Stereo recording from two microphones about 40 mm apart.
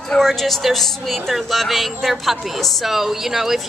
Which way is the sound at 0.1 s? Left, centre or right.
Centre.